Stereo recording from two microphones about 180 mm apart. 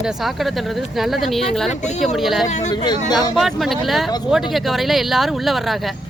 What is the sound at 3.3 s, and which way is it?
Speech, centre (ahead or behind).